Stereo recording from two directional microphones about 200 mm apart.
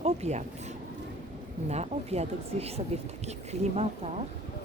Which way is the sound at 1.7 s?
35° right (ahead or behind).